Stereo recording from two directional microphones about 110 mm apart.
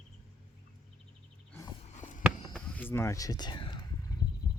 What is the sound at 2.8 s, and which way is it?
Speech, 20° left (ahead or behind).